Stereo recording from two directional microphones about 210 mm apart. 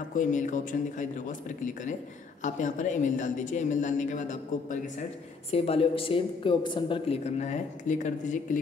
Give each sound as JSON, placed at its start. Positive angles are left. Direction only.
{"t": 0.1, "sound": "speech", "side_deg": 35}
{"t": 2.4, "sound": "speech", "side_deg": 35}